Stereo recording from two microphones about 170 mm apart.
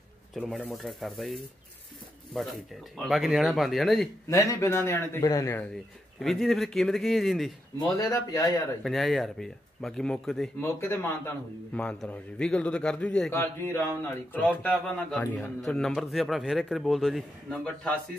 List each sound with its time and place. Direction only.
0.3 s a man's voice: centre (ahead or behind)
4.3 s a man's voice: 20° left (ahead or behind)
6.1 s a man's voice: centre (ahead or behind)
8.0 s a man's voice: 20° left (ahead or behind)
8.8 s a man's voice: centre (ahead or behind)
10.6 s a man's voice: 15° left (ahead or behind)